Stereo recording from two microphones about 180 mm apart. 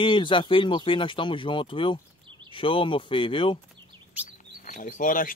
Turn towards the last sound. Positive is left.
turn(degrees=50)  # may be behind; listen again after turning